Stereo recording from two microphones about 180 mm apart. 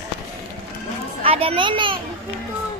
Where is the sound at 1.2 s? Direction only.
30° right (ahead or behind).